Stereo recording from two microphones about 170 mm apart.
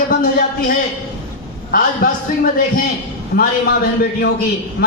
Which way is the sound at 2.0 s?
55° left (ahead or behind).